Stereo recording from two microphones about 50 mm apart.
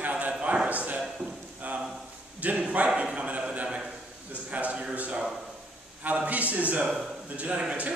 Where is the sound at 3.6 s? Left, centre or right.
Centre.